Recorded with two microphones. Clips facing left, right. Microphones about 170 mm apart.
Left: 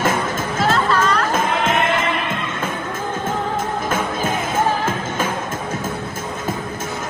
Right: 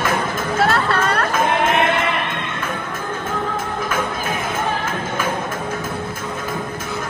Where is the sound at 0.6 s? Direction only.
60° right (ahead or behind).